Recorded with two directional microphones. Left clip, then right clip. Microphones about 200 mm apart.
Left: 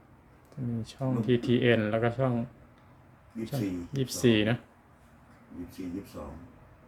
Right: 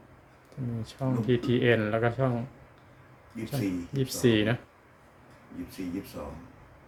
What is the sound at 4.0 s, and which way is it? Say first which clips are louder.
Speech: even; 10° left (ahead or behind).